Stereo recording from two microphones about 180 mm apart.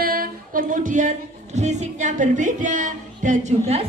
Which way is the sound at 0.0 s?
55° right (ahead or behind).